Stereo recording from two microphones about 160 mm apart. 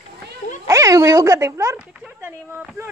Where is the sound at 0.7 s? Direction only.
20° right (ahead or behind).